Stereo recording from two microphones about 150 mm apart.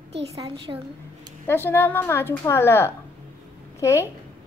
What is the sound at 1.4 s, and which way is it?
A woman's voice, 15° left (ahead or behind).